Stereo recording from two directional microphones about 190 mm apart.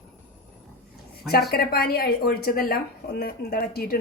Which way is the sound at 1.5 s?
55° left (ahead or behind).